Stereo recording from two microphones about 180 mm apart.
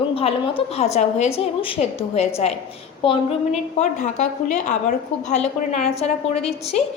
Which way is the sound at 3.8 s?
40° left (ahead or behind).